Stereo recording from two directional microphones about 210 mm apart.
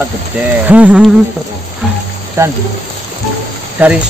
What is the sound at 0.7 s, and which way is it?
Speech, 5° right (ahead or behind).